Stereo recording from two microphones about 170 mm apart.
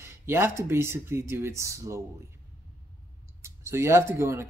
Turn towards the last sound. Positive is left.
turn(degrees=-15)  # may be behind; listen again after turning